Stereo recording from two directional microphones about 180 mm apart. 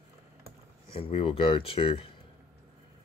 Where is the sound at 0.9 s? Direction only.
30° left (ahead or behind).